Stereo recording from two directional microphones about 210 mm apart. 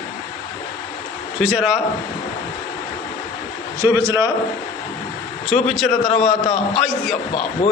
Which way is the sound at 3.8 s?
15° right (ahead or behind).